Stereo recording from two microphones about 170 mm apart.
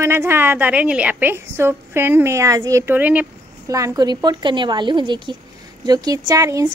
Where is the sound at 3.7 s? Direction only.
20° right (ahead or behind).